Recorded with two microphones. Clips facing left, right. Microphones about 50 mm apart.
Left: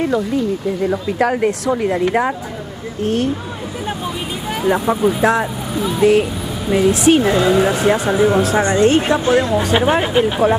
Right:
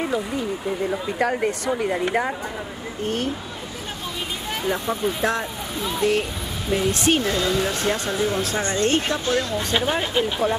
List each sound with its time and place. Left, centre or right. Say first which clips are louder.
0.8 s speech: left 6 dB; centre
4.6 s speech: left 9 dB; centre
7.2 s speech: left 8 dB; left
7.7 s speech: left 9 dB; centre